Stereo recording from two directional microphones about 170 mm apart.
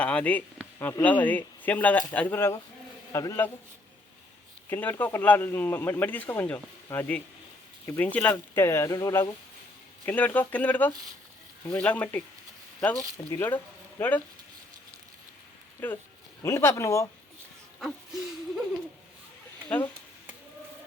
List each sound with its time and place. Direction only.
0.0 s a sound: 5° left (ahead or behind)
0.8 s speech: 10° left (ahead or behind)
4.7 s speech: 10° left (ahead or behind)
10.1 s speech: 10° left (ahead or behind)
13.3 s speech: 15° left (ahead or behind)
15.8 s speech: 10° left (ahead or behind)
17.7 s a sound: centre (ahead or behind)
19.6 s speech: 10° left (ahead or behind)